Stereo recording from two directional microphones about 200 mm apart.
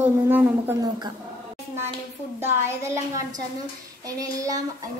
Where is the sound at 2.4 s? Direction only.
15° right (ahead or behind).